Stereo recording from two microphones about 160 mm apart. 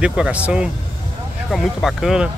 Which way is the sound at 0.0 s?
5° right (ahead or behind).